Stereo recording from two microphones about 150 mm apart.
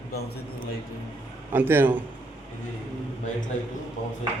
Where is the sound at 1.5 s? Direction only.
15° right (ahead or behind).